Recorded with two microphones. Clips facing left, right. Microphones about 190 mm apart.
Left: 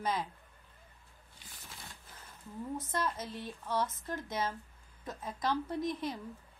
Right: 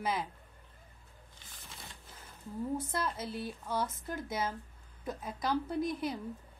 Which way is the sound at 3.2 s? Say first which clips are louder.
Right 3 dB; 10° right (ahead or behind).